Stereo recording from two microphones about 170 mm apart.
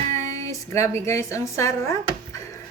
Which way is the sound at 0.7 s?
15° left (ahead or behind).